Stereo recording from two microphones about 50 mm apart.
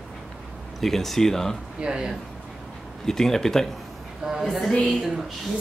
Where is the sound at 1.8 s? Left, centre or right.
Centre.